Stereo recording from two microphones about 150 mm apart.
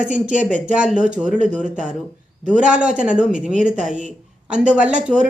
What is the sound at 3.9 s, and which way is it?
Speech, 50° right (ahead or behind).